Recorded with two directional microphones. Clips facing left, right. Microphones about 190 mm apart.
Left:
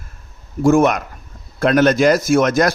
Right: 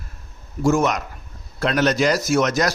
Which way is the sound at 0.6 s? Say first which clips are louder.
Left 5 dB; 55° left (ahead or behind).